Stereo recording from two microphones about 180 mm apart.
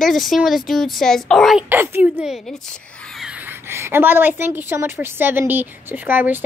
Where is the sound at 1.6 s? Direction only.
10° right (ahead or behind).